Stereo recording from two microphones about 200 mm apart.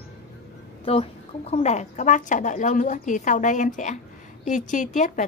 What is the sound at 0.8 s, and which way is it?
A woman's voice, 30° left (ahead or behind).